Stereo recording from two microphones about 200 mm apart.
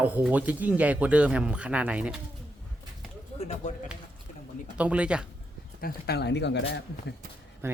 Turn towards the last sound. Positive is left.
turn(degrees=-10)  # may be behind; listen again after turning